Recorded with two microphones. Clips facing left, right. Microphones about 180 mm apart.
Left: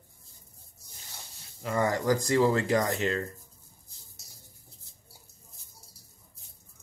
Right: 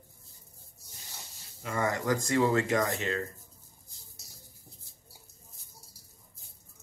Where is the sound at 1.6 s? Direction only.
35° left (ahead or behind).